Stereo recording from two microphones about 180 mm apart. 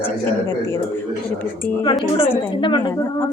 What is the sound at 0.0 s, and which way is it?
A woman's voice, 15° left (ahead or behind).